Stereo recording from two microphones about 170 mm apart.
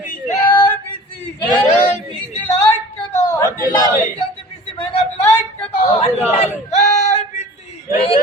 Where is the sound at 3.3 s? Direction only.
20° left (ahead or behind).